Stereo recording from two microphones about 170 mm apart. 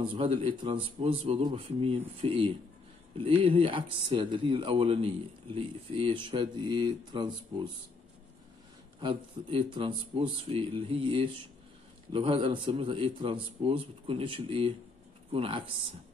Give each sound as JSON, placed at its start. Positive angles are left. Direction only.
{"t": 0.0, "sound": "a man's voice", "side_deg": -30}
{"t": 9.0, "sound": "a man's voice", "side_deg": -30}